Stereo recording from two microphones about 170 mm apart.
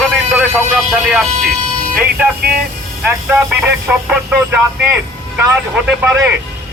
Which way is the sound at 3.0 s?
10° right (ahead or behind).